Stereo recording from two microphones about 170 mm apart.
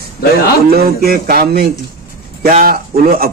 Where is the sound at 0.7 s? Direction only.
65° right (ahead or behind).